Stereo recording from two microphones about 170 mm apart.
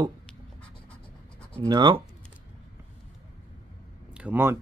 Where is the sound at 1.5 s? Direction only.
25° right (ahead or behind).